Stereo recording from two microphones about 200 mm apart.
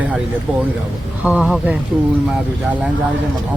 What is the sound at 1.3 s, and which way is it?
Speech, 5° right (ahead or behind).